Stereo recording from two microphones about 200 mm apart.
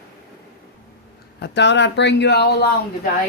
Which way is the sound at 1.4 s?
60° left (ahead or behind).